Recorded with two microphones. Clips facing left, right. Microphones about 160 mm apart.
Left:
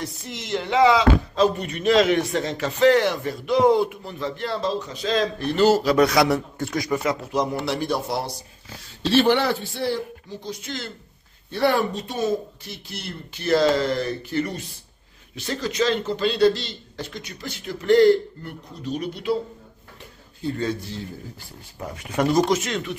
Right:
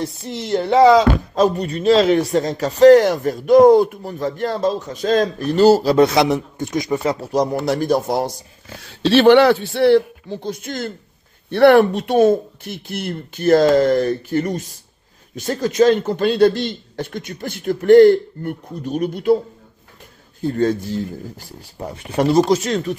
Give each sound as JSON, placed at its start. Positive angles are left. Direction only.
{"t": 0.0, "sound": "speech", "side_deg": -30}
{"t": 8.8, "sound": "a man's voice", "side_deg": -75}
{"t": 11.5, "sound": "a man's voice", "side_deg": -65}
{"t": 20.4, "sound": "a man's voice", "side_deg": -45}
{"t": 21.7, "sound": "speech", "side_deg": -30}